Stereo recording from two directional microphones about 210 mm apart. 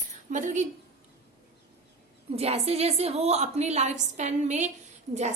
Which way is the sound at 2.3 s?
30° right (ahead or behind).